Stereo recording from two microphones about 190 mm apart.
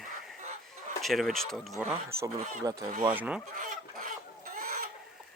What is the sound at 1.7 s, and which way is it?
Speech, 15° right (ahead or behind).